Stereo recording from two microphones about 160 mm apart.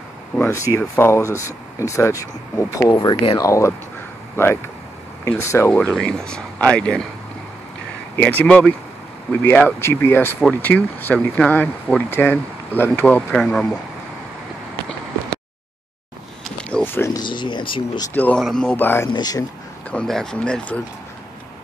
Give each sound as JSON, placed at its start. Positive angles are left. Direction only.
{"t": 0.4, "sound": "speech", "side_deg": 20}
{"t": 5.9, "sound": "speech", "side_deg": 5}
{"t": 8.2, "sound": "speech", "side_deg": 10}
{"t": 16.5, "sound": "a sound", "side_deg": 10}
{"t": 17.2, "sound": "speech", "side_deg": 30}
{"t": 18.1, "sound": "speech", "side_deg": 10}
{"t": 19.0, "sound": "speech", "side_deg": 25}
{"t": 19.9, "sound": "speech", "side_deg": 5}